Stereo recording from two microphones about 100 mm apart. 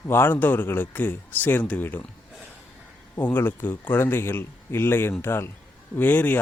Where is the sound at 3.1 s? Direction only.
20° left (ahead or behind).